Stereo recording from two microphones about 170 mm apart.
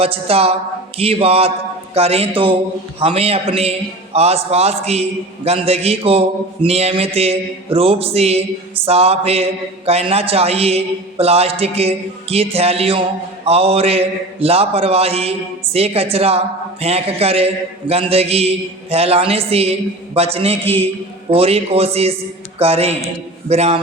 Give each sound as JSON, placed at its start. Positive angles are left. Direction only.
{"t": 0.0, "sound": "a man's voice", "side_deg": -35}